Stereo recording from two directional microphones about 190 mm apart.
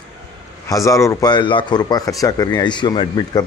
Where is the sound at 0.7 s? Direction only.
15° left (ahead or behind).